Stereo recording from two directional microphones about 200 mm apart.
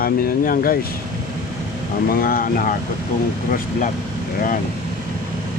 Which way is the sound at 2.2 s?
45° left (ahead or behind).